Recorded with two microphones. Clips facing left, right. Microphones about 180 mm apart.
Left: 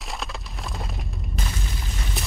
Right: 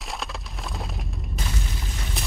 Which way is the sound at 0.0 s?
Centre (ahead or behind).